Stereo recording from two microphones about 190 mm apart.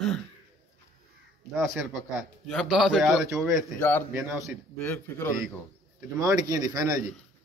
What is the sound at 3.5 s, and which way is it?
Speech, 10° left (ahead or behind).